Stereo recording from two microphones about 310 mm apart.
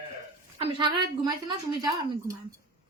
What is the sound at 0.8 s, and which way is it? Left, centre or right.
A man's voice, centre.